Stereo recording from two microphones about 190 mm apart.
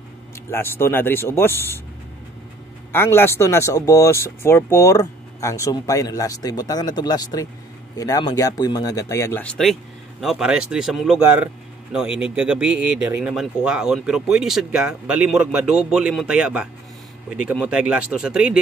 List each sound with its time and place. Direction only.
0.5 s speech: 10° left (ahead or behind)
2.9 s a man's voice: 10° left (ahead or behind); by 18.6 s 5° right (ahead or behind)